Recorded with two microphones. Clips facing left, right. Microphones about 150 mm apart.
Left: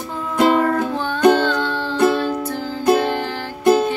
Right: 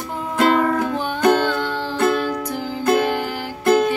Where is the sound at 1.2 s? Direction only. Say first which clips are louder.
Left 3 dB; 10° right (ahead or behind).